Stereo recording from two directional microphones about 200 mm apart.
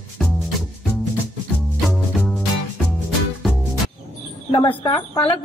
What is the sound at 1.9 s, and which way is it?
Music, centre (ahead or behind).